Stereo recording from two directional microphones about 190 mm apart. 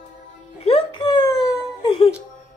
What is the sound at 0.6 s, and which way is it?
Music, 30° left (ahead or behind).